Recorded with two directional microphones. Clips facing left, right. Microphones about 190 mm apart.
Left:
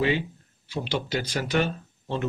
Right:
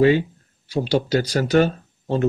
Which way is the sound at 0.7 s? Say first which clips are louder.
Right 9 dB; 40° right (ahead or behind).